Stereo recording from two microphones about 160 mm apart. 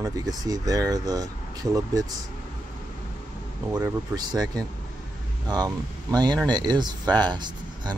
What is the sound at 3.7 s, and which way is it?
Speech, 25° right (ahead or behind).